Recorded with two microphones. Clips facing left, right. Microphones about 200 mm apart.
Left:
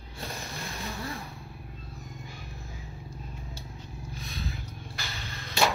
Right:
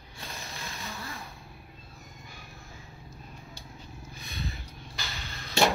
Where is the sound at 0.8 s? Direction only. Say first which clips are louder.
Left 5 dB; 35° left (ahead or behind).